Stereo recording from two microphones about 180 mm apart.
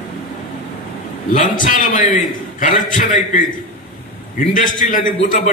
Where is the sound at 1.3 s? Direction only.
45° left (ahead or behind).